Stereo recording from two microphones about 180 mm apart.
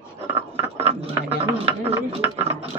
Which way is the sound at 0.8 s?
35° right (ahead or behind).